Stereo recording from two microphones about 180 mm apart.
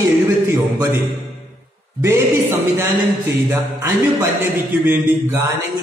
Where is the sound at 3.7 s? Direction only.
15° right (ahead or behind).